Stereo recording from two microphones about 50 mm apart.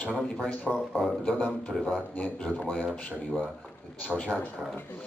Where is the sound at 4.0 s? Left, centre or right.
Left.